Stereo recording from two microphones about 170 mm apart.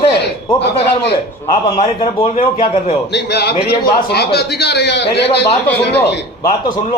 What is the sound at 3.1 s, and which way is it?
A man's voice, 80° left.